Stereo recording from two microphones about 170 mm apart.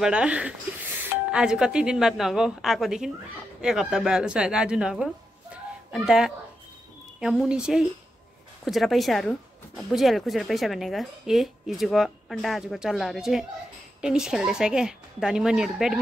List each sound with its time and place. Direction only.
0.0 s speech: 5° right (ahead or behind)